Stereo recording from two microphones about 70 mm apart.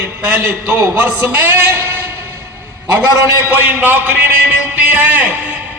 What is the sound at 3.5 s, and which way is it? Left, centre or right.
A man's voice, right.